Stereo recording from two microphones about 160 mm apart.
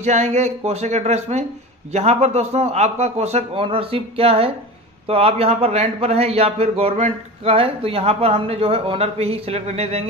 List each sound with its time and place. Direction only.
0.0 s a man's voice: 45° right (ahead or behind)